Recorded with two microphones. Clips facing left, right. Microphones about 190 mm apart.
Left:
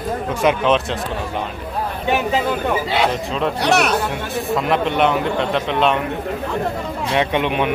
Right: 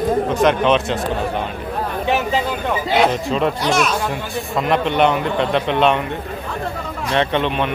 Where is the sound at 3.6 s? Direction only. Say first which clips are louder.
Left 2 dB; 65° left (ahead or behind).